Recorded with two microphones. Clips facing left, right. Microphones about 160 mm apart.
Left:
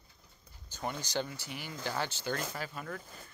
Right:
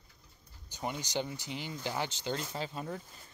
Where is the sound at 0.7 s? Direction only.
15° right (ahead or behind).